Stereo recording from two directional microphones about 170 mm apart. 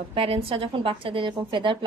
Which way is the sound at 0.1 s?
30° right (ahead or behind).